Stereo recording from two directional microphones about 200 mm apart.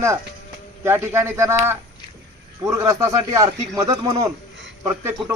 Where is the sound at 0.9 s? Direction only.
10° right (ahead or behind).